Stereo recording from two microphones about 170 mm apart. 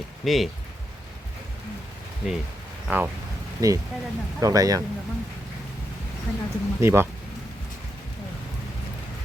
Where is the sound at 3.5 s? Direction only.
20° right (ahead or behind).